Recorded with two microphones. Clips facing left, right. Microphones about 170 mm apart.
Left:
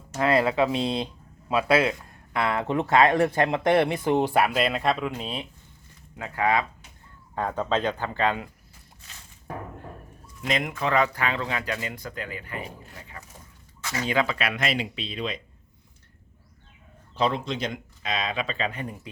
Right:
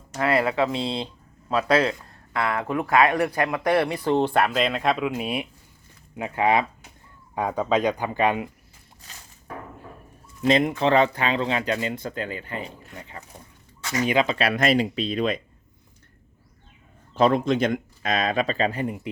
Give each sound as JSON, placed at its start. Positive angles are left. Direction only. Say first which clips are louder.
{"t": 0.2, "sound": "speech", "louder": "even", "side_deg": 20}
{"t": 1.9, "sound": "speech", "louder": "even", "side_deg": 20}
{"t": 10.4, "sound": "speech", "louder": "right 7 dB", "side_deg": -30}
{"t": 13.9, "sound": "speech", "louder": "right 4 dB", "side_deg": -15}
{"t": 14.3, "sound": "speech", "louder": "right 7 dB", "side_deg": -35}
{"t": 17.2, "sound": "speech", "louder": "right 7 dB", "side_deg": -50}